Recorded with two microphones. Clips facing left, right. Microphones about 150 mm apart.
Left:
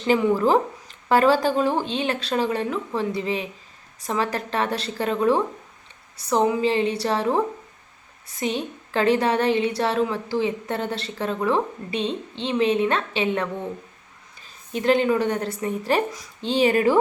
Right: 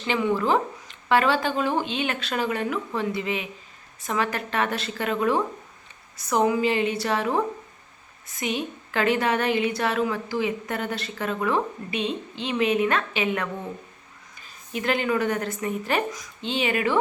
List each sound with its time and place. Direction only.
0.1 s a woman's voice: 35° left (ahead or behind)
6.1 s a woman's voice: 30° left (ahead or behind)